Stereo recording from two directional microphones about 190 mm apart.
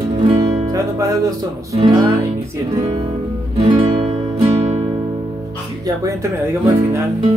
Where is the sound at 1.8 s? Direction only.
25° right (ahead or behind).